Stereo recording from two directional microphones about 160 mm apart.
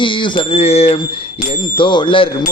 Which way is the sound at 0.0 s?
35° left (ahead or behind).